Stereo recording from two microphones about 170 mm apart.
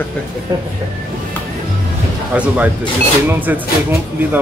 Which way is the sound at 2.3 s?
10° right (ahead or behind).